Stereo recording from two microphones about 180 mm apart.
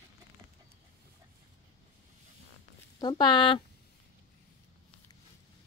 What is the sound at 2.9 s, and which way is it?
Speech, 25° left (ahead or behind).